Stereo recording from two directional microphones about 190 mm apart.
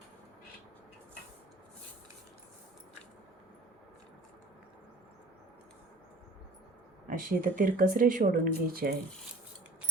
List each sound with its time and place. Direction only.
7.1 s speech: 45° right (ahead or behind)